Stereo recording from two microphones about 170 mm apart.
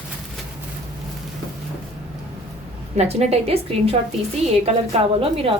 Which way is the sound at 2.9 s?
40° right (ahead or behind).